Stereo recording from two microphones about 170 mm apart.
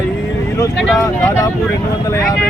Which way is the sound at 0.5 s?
20° left (ahead or behind).